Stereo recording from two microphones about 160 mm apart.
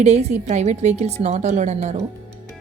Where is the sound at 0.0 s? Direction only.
45° right (ahead or behind).